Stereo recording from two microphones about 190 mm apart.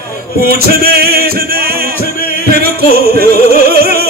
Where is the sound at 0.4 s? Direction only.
55° right (ahead or behind).